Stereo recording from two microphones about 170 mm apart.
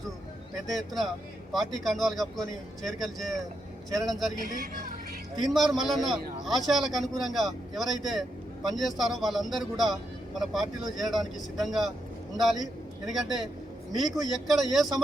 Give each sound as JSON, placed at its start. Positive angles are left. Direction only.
{"t": 0.7, "sound": "speech", "side_deg": 0}
{"t": 4.4, "sound": "speech", "side_deg": -55}
{"t": 5.4, "sound": "speech", "side_deg": 0}